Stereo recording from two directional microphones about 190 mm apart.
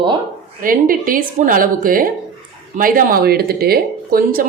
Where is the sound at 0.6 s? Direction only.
45° right (ahead or behind).